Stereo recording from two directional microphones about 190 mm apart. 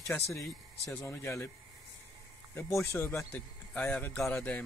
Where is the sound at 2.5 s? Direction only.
15° left (ahead or behind).